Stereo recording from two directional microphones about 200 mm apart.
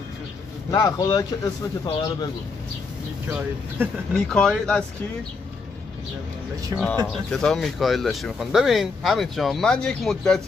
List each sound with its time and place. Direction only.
0.7 s speech: 15° left (ahead or behind)
3.3 s speech: 10° right (ahead or behind)
4.1 s speech: centre (ahead or behind)
6.7 s speech: centre (ahead or behind)